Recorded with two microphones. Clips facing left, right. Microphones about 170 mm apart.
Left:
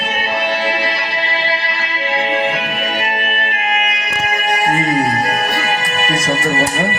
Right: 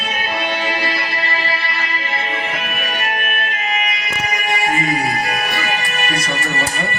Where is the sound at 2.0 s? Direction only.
70° left (ahead or behind).